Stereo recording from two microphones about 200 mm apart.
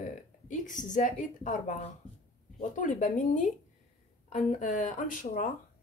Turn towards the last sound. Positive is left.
turn(degrees=40)  # may be behind; listen again after turning